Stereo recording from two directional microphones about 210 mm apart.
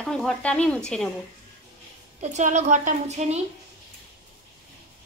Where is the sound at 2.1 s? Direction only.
35° right (ahead or behind).